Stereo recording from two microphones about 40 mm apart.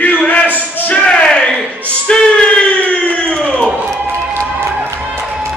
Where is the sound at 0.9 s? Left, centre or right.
Left.